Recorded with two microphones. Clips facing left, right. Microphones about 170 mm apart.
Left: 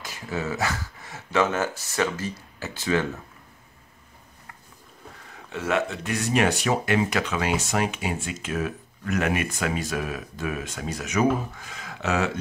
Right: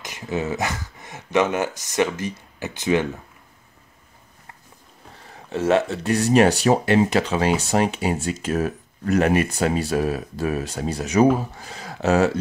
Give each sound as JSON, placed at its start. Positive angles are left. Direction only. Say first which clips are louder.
{"t": 0.0, "sound": "speech", "louder": "right 4 dB", "side_deg": -20}
{"t": 5.3, "sound": "speech", "louder": "right 7 dB", "side_deg": -35}